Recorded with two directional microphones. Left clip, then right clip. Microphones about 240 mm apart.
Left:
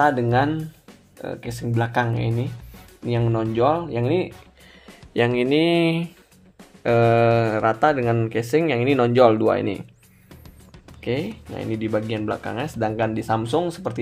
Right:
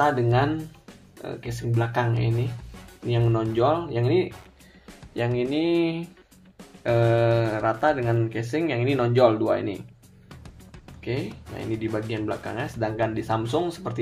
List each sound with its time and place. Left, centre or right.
0.0 s speech: left
3.1 s speech: left
11.0 s speech: left